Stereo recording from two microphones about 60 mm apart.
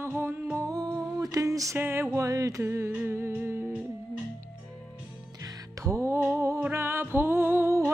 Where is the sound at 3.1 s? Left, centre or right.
Right.